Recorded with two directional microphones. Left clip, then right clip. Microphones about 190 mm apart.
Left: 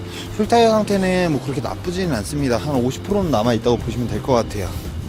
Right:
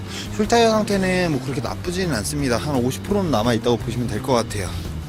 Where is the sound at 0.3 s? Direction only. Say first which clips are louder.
Left 2 dB; 5° left (ahead or behind).